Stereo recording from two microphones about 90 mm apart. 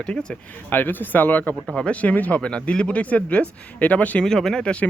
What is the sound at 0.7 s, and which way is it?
Speech, 20° left (ahead or behind).